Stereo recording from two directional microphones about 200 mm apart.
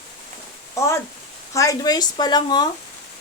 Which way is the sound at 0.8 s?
15° left (ahead or behind).